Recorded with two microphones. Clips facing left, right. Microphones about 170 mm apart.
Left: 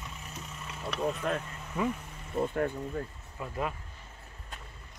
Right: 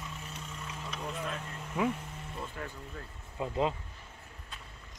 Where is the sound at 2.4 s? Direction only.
50° left (ahead or behind).